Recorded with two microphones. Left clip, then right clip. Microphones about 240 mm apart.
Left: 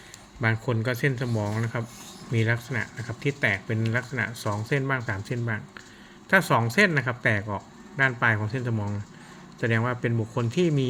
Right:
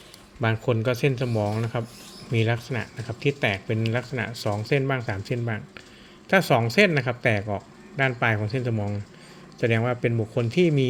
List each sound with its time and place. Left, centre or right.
0.4 s speech: centre